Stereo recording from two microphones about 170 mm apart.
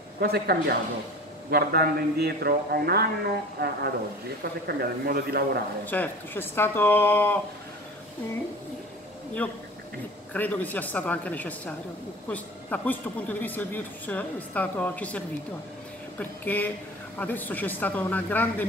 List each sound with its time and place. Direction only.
0.2 s a man's voice: 70° right (ahead or behind)
5.9 s speech: 10° left (ahead or behind)
9.4 s speech: 10° left (ahead or behind)